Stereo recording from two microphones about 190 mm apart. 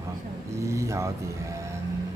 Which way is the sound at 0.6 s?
15° right (ahead or behind).